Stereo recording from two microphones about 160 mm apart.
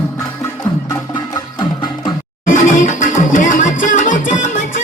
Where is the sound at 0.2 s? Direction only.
20° left (ahead or behind).